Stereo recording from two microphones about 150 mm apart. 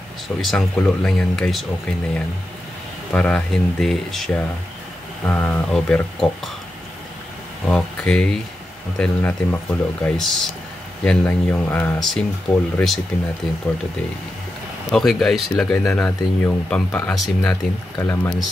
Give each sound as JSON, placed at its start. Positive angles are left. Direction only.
{"t": 0.4, "sound": "speech", "side_deg": 5}
{"t": 3.1, "sound": "speech", "side_deg": 5}
{"t": 7.6, "sound": "speech", "side_deg": 5}
{"t": 14.9, "sound": "speech", "side_deg": 5}
{"t": 15.8, "sound": "speech", "side_deg": 15}
{"t": 17.5, "sound": "speech", "side_deg": 20}